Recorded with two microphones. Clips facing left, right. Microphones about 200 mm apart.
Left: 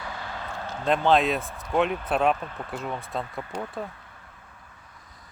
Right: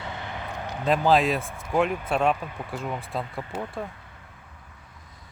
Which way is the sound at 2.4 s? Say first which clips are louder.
Right 1 dB; 10° right (ahead or behind).